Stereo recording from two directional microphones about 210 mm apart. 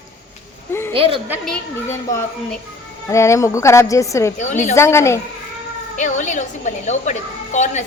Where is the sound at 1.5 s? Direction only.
10° left (ahead or behind).